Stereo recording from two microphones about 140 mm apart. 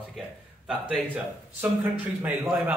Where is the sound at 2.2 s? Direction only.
10° right (ahead or behind).